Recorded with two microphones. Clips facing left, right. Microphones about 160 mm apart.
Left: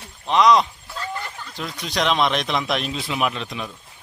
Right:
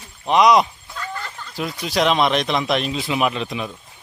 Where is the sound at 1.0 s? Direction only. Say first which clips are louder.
Even; 20° left (ahead or behind).